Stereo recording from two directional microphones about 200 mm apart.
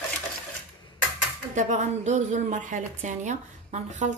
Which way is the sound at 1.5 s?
35° right (ahead or behind).